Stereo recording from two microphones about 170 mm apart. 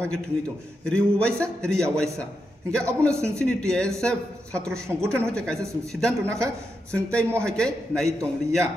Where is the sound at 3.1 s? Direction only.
15° right (ahead or behind).